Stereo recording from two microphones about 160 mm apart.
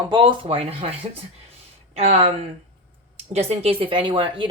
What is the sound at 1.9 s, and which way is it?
Speech, 40° right (ahead or behind).